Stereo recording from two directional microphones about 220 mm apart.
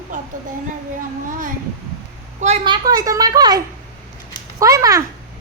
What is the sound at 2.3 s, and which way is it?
A woman's voice, 30° right (ahead or behind).